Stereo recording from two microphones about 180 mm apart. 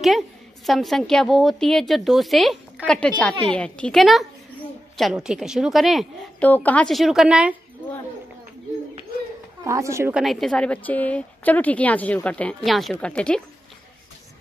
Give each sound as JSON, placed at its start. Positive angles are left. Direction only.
{"t": 0.7, "sound": "a woman's voice", "side_deg": 0}
{"t": 9.7, "sound": "a woman's voice", "side_deg": -15}
{"t": 10.2, "sound": "a woman's voice", "side_deg": 0}